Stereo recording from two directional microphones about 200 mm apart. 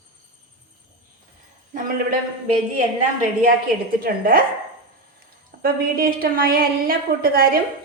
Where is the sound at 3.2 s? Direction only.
40° right (ahead or behind).